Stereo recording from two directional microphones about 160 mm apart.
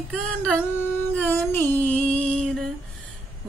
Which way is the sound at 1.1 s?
10° left (ahead or behind).